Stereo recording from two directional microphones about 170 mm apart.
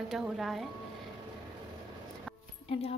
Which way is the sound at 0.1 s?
Centre (ahead or behind).